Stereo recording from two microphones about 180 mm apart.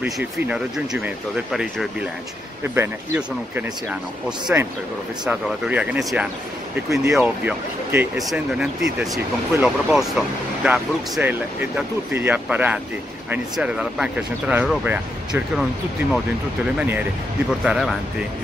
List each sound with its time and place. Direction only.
0.0 s speech: 10° right (ahead or behind)
2.6 s speech: 15° right (ahead or behind)
17.5 s speech: centre (ahead or behind)